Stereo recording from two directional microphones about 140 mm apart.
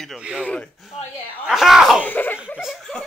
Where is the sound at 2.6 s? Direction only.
Centre (ahead or behind).